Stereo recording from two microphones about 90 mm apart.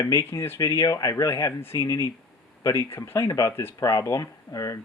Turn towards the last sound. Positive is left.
turn(degrees=35)  # may be behind; listen again after turning